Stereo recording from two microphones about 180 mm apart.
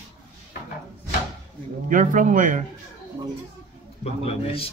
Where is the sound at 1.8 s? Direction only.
45° right (ahead or behind).